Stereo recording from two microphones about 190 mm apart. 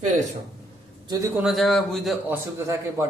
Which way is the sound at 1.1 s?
15° right (ahead or behind).